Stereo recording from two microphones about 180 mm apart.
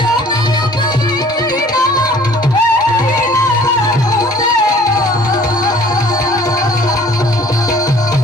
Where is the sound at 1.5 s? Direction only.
20° left (ahead or behind).